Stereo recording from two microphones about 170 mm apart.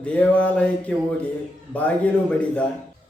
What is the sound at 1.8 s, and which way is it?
Speech, 10° left (ahead or behind).